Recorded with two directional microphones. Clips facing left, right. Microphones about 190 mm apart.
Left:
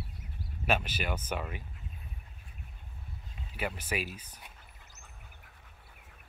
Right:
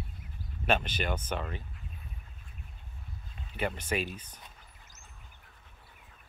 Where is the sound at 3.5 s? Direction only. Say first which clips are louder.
Right 3 dB; 5° left (ahead or behind).